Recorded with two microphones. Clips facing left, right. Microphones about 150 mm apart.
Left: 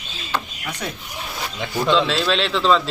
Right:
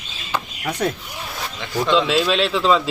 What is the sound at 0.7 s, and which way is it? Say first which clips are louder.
Speech: right 9 dB; 55° right (ahead or behind).